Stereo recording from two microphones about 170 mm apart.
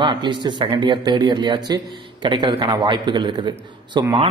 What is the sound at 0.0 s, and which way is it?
A man's voice, 25° right (ahead or behind).